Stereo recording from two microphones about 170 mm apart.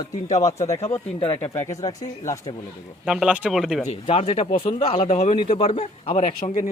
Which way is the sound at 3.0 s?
5° right (ahead or behind).